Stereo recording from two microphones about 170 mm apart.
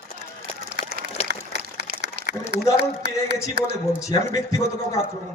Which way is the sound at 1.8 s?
70° right (ahead or behind).